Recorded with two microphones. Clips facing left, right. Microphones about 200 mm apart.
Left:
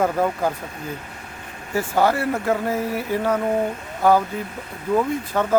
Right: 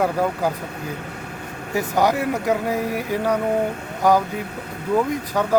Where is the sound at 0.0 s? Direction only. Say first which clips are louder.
Even; 10° right (ahead or behind).